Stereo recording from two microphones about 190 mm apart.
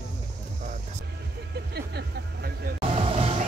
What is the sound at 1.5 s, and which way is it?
Vehicle, 60° right (ahead or behind).